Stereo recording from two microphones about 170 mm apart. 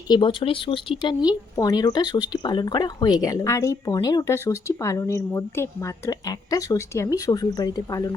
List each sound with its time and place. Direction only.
0.1 s a woman's voice: 30° left (ahead or behind)